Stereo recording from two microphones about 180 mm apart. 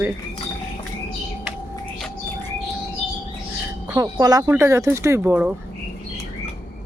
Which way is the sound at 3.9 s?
20° right (ahead or behind).